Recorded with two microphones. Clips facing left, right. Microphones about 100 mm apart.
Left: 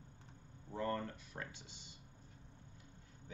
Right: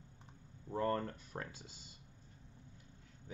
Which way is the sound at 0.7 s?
40° right (ahead or behind).